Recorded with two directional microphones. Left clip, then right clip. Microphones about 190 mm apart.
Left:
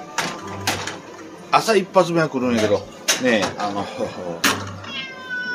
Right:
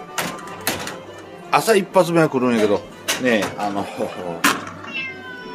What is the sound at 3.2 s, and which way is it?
Speech, 15° right (ahead or behind).